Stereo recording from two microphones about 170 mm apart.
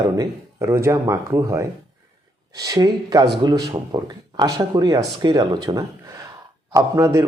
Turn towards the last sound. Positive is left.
turn(degrees=-20)  # may be behind; listen again after turning